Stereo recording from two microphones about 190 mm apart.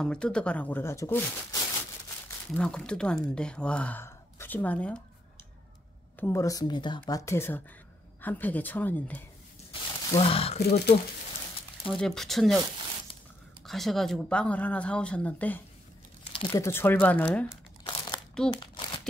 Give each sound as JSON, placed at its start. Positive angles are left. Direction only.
{"t": 0.0, "sound": "speech", "side_deg": 5}
{"t": 2.2, "sound": "speech", "side_deg": 5}
{"t": 6.1, "sound": "speech", "side_deg": 15}
{"t": 9.7, "sound": "a sound", "side_deg": 30}
{"t": 10.6, "sound": "speech", "side_deg": 55}
{"t": 11.8, "sound": "speech", "side_deg": 0}
{"t": 13.7, "sound": "speech", "side_deg": 0}
{"t": 16.3, "sound": "speech", "side_deg": 20}
{"t": 17.8, "sound": "crumpling", "side_deg": 25}